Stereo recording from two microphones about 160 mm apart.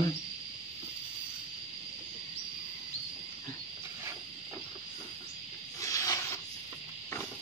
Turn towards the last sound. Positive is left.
turn(degrees=20)  # may be behind; listen again after turning